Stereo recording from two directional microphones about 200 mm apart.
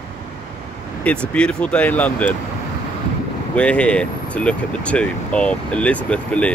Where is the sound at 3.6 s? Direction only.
5° left (ahead or behind).